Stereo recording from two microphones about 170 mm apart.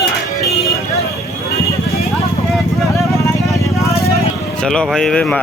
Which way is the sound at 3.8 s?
15° left (ahead or behind).